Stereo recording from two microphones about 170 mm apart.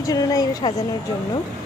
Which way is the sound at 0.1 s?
20° left (ahead or behind).